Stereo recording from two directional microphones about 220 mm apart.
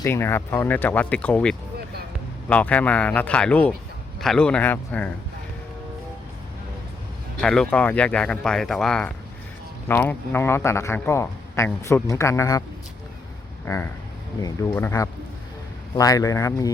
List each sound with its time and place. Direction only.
0.0 s a man's voice: 10° left (ahead or behind)
7.3 s a man's voice: 5° left (ahead or behind)
13.7 s a man's voice: 10° left (ahead or behind)